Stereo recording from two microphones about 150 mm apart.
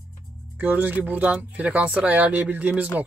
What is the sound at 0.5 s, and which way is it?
Speech, 10° right (ahead or behind).